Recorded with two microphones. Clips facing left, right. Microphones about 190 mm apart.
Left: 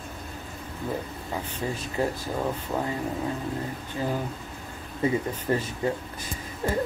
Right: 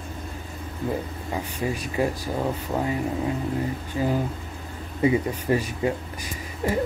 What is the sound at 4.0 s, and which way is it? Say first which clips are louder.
Speech: right 4 dB; 15° right (ahead or behind).